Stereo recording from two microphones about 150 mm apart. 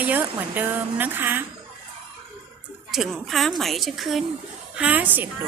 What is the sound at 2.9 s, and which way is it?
A woman's voice, centre (ahead or behind).